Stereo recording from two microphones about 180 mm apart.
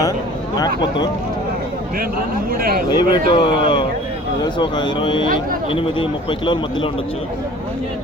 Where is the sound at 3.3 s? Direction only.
25° left (ahead or behind).